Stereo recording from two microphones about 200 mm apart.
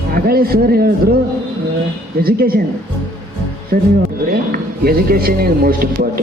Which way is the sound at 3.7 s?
45° right (ahead or behind).